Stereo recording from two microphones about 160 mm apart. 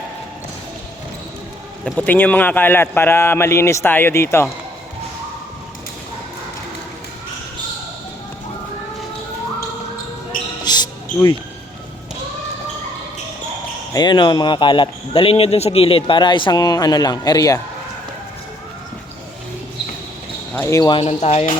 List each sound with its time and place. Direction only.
1.8 s a man's voice: 10° left (ahead or behind)
10.6 s basketball bounce: 25° left (ahead or behind)
13.9 s speech: 25° left (ahead or behind)
20.5 s speech: 15° left (ahead or behind)
21.0 s speech: 40° left (ahead or behind)